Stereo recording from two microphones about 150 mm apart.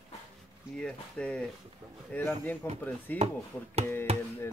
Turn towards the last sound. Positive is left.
turn(degrees=-45)  # may be behind; listen again after turning